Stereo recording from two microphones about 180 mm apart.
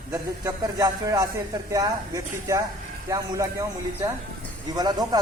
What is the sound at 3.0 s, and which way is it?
Speech, 20° right (ahead or behind).